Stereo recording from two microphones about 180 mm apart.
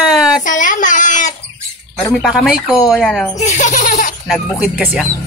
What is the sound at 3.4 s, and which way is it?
Giggle, 45° left (ahead or behind).